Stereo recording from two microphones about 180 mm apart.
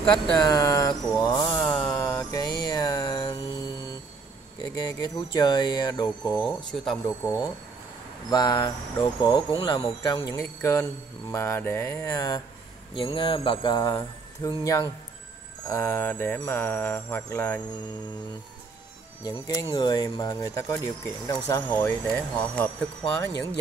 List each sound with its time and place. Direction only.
0.0 s speech: 25° left (ahead or behind)
1.4 s mantra: 5° left (ahead or behind)
2.3 s music: 20° left (ahead or behind)
4.7 s speech: 25° left (ahead or behind)
8.3 s speech: 20° left (ahead or behind)
19.2 s speech: 20° left (ahead or behind)